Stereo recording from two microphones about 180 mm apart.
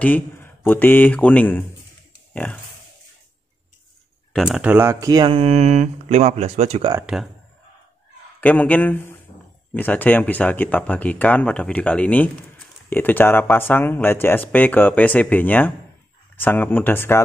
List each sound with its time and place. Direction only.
0.0 s speech: 10° left (ahead or behind)
4.3 s speech: centre (ahead or behind); by 6.9 s 35° right (ahead or behind)
8.4 s speech: 10° left (ahead or behind)